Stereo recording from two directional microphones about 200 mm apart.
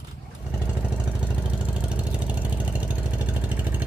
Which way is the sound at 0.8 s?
5° right (ahead or behind).